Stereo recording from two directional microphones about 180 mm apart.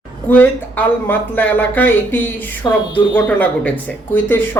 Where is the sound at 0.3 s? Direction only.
10° left (ahead or behind).